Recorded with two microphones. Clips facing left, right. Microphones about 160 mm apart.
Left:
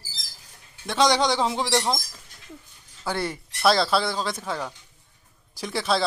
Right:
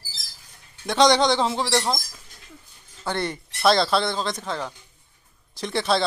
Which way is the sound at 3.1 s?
5° left (ahead or behind).